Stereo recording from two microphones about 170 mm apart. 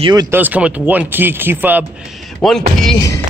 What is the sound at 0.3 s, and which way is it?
Speech, 10° right (ahead or behind).